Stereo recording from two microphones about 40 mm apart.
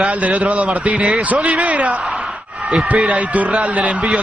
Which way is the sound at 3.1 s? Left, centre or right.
Right.